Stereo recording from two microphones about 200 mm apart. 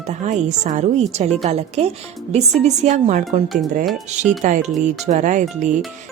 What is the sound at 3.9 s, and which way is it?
Speech, centre (ahead or behind).